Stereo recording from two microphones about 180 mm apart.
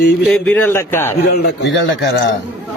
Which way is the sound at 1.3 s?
80° left.